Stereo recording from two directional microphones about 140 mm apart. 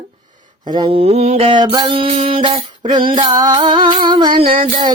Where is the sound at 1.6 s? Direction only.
35° right (ahead or behind).